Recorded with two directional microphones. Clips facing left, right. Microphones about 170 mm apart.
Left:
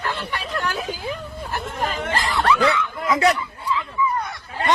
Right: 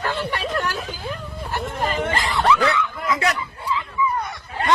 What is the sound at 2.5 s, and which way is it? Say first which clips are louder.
Speech: left 1 dB; 20° left (ahead or behind).